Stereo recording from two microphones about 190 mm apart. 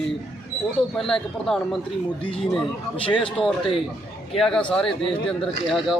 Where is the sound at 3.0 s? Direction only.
25° left (ahead or behind).